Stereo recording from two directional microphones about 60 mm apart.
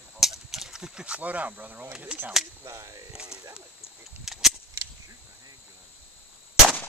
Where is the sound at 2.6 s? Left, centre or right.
Right.